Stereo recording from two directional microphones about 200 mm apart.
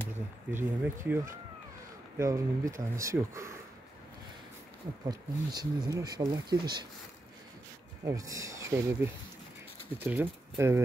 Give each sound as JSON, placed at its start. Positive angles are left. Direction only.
{"t": 0.5, "sound": "speech", "side_deg": -10}
{"t": 5.0, "sound": "speech", "side_deg": -20}
{"t": 8.0, "sound": "speech", "side_deg": -15}